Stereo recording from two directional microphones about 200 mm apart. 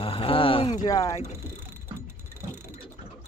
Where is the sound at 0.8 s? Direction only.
20° left (ahead or behind).